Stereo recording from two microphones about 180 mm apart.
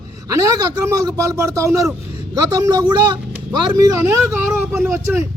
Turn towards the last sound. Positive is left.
turn(degrees=-15)  # may be behind; listen again after turning